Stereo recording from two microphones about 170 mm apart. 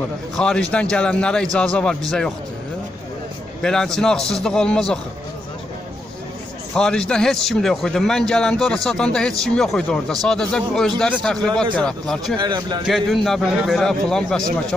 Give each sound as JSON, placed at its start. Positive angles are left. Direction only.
{"t": 0.4, "sound": "a man's voice", "side_deg": 5}
{"t": 3.6, "sound": "a man's voice", "side_deg": 5}
{"t": 6.7, "sound": "a man's voice", "side_deg": 5}
{"t": 12.4, "sound": "a man's voice", "side_deg": -25}
{"t": 12.8, "sound": "a man's voice", "side_deg": 0}